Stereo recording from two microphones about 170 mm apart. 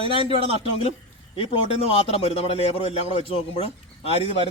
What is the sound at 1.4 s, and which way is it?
Speech, 40° left (ahead or behind).